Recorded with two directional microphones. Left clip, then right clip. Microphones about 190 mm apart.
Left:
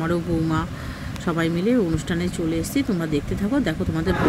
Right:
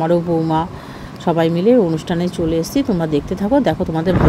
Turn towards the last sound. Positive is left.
turn(degrees=-15)  # may be behind; listen again after turning